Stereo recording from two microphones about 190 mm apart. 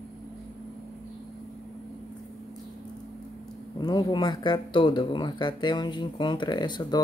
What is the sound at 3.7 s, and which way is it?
Speech, 20° left (ahead or behind).